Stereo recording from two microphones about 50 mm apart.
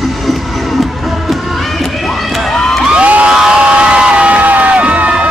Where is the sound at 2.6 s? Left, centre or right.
Centre.